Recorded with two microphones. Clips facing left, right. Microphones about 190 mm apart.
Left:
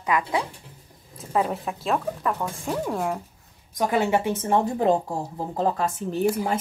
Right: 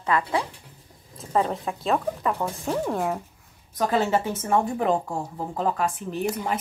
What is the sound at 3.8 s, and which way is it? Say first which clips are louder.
A woman's voice: left 1 dB; 15° left (ahead or behind).